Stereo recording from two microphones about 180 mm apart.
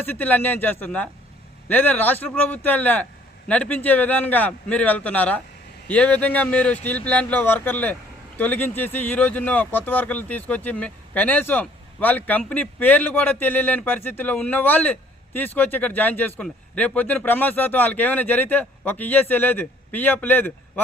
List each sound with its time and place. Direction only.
0.0 s speech: 10° left (ahead or behind)